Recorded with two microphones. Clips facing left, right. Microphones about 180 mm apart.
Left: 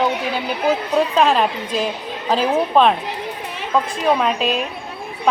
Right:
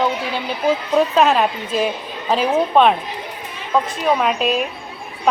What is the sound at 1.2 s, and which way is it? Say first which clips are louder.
A woman's voice: right 1 dB; 5° right (ahead or behind).